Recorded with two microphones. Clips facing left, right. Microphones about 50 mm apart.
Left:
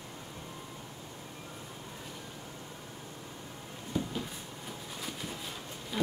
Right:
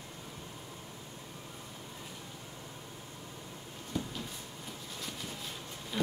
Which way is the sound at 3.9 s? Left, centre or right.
Centre.